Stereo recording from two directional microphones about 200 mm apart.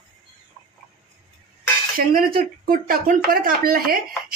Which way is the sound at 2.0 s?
45° right (ahead or behind).